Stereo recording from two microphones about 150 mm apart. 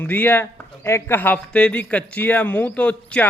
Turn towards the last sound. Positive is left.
turn(degrees=10)  # may be behind; listen again after turning